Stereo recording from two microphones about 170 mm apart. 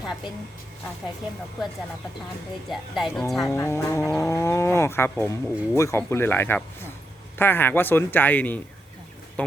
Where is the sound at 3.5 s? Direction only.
15° left (ahead or behind).